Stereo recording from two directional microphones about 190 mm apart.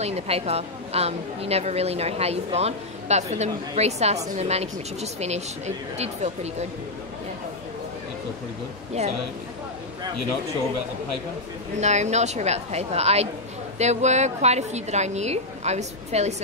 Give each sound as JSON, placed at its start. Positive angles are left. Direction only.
{"t": 0.0, "sound": "a woman's voice", "side_deg": -35}
{"t": 11.8, "sound": "a woman's voice", "side_deg": -35}